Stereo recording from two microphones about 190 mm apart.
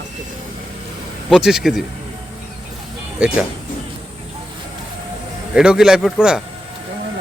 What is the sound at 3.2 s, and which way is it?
Speech, 5° right (ahead or behind).